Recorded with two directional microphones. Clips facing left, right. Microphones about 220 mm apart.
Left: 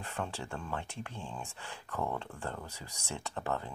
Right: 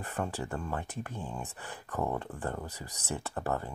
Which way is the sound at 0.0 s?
15° right (ahead or behind).